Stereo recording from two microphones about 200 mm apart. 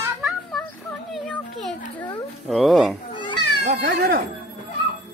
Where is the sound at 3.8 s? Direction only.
45° right (ahead or behind).